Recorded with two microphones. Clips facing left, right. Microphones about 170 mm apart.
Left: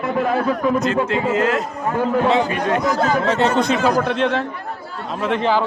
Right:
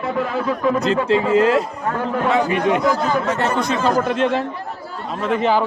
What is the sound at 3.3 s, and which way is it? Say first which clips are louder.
Speech: left 3 dB; 75° left (ahead or behind).